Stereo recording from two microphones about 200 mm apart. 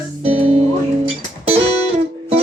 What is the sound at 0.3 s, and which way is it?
Music, 30° right (ahead or behind).